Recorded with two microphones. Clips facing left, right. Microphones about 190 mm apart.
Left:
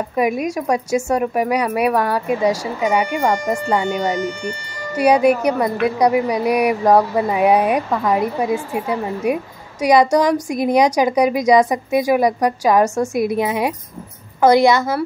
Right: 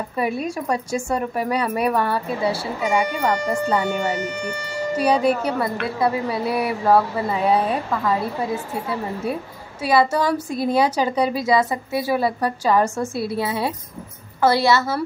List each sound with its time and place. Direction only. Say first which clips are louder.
0.1 s speech: left 5 dB; 15° left (ahead or behind)